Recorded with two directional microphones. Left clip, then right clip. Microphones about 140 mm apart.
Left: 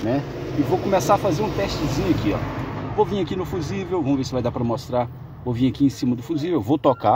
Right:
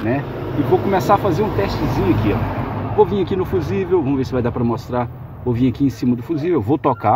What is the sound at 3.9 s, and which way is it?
Speech, 25° left (ahead or behind).